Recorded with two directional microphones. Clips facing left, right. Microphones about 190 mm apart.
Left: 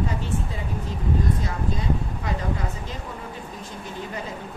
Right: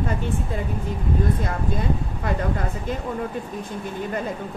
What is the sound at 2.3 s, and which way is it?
Speech, 55° right (ahead or behind).